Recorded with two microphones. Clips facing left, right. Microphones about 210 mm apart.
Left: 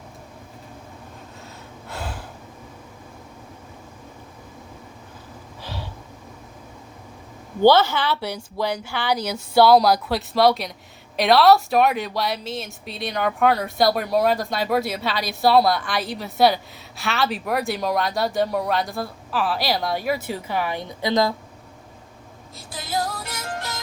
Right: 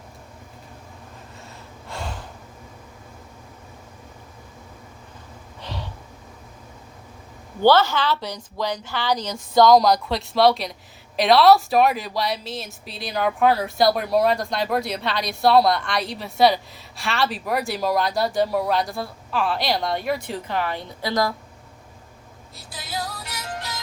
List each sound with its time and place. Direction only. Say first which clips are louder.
1.9 s gasp: even; 5° left (ahead or behind)
7.6 s a woman's voice: left 1 dB; 10° left (ahead or behind)
22.5 s music: left 5 dB; 50° left (ahead or behind)